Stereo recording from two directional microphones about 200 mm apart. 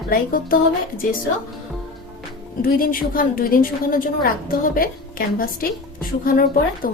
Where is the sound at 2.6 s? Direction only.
45° left (ahead or behind).